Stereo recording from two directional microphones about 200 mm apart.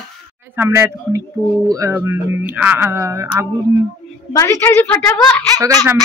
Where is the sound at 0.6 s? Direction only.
15° right (ahead or behind).